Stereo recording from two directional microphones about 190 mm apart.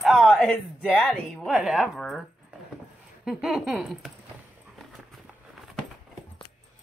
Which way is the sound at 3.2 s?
5° right (ahead or behind).